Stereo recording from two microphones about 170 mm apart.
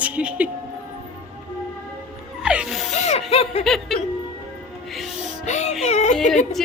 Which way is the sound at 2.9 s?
40° left (ahead or behind).